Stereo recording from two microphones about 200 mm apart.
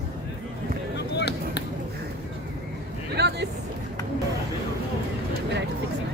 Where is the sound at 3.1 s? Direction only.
55° right (ahead or behind).